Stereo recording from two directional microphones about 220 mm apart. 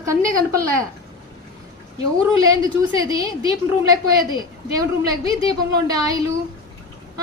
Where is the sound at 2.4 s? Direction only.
15° right (ahead or behind).